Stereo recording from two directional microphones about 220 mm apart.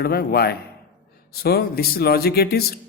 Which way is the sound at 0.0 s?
45° left (ahead or behind).